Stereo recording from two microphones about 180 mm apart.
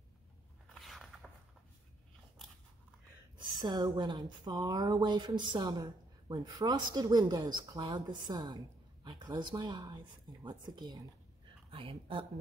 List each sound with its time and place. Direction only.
0.7 s biting: centre (ahead or behind)
3.5 s speech: 25° right (ahead or behind)